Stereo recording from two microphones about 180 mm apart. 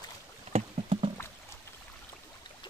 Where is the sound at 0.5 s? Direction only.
35° right (ahead or behind).